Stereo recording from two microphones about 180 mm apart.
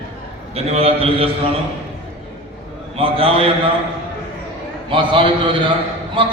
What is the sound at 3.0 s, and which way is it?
Speech, 30° right (ahead or behind).